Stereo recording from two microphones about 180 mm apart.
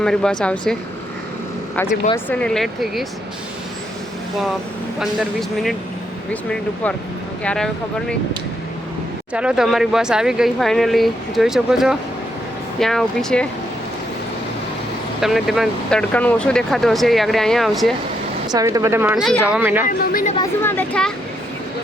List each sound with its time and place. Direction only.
0.0 s speech: 5° left (ahead or behind)
2.1 s speech: 5° left (ahead or behind)
4.9 s speech: centre (ahead or behind)
7.4 s speech: 5° left (ahead or behind)
9.3 s speech: 5° right (ahead or behind)
15.2 s speech: centre (ahead or behind)
18.4 s speech: 20° right (ahead or behind)
19.1 s speech: centre (ahead or behind)
20.4 s speech: 10° left (ahead or behind)